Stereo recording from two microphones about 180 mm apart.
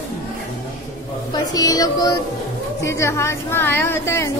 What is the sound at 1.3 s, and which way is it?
Speech, 20° left (ahead or behind).